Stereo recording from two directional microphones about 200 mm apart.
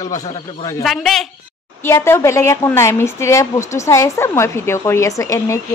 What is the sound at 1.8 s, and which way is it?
Speech, 15° left (ahead or behind).